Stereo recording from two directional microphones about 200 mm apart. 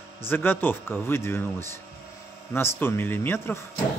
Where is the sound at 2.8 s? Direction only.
10° left (ahead or behind).